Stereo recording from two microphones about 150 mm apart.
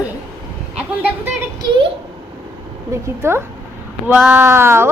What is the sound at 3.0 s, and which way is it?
Speech, 15° right (ahead or behind).